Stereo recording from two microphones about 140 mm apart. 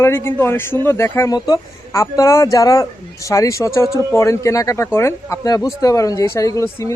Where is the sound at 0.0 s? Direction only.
20° left (ahead or behind).